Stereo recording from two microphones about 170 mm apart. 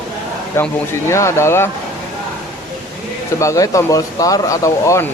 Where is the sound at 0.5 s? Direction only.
15° left (ahead or behind).